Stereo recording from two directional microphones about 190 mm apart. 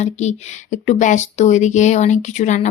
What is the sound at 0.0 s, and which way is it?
Speech, 35° left (ahead or behind).